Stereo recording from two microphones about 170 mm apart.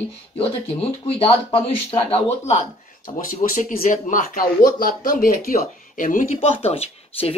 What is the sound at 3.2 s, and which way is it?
Speech, 55° left (ahead or behind).